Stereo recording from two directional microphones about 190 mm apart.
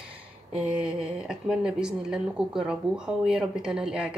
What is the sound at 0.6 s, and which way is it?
A woman's voice, 5° right (ahead or behind).